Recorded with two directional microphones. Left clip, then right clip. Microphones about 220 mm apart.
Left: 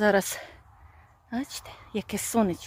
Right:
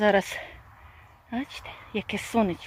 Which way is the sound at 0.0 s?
15° left (ahead or behind).